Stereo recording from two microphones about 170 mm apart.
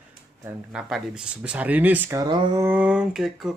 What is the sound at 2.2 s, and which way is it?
Speech, 20° right (ahead or behind).